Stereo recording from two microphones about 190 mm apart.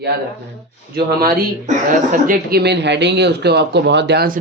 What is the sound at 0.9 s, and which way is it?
Speech, 55° right (ahead or behind).